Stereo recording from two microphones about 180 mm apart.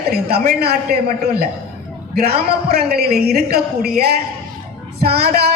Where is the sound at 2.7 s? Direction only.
60° right (ahead or behind).